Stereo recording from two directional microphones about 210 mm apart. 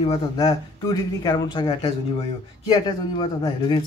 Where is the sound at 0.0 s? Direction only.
20° left (ahead or behind).